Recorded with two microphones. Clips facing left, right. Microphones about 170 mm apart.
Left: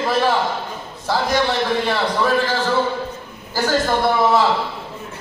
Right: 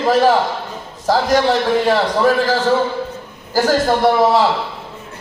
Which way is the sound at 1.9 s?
40° right (ahead or behind).